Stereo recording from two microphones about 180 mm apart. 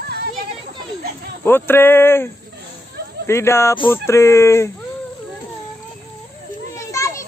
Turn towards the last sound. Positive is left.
turn(degrees=15)  # may be behind; listen again after turning